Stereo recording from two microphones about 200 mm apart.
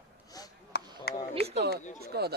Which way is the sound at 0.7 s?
55° left (ahead or behind).